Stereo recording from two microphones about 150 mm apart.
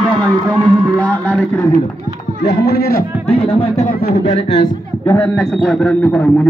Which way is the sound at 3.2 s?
40° left (ahead or behind).